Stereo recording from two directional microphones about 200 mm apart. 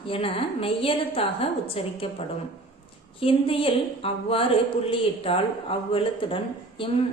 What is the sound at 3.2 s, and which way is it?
A woman's voice, 25° left (ahead or behind).